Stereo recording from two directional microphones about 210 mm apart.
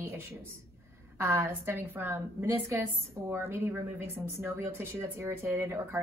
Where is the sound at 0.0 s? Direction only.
10° right (ahead or behind).